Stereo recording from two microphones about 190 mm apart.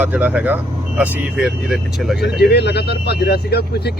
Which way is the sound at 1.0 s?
5° right (ahead or behind).